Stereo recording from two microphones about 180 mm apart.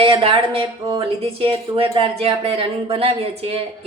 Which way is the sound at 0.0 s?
30° right (ahead or behind).